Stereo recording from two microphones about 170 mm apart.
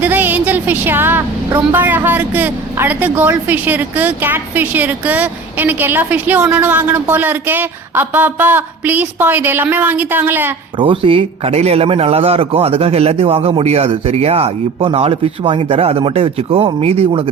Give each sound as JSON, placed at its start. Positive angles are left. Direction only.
{"t": 0.0, "sound": "a woman's voice", "side_deg": -10}
{"t": 10.8, "sound": "a man's voice", "side_deg": -30}